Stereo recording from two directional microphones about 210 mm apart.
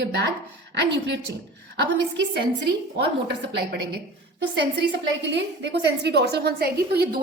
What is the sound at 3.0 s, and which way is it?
A woman's voice, 55° right (ahead or behind).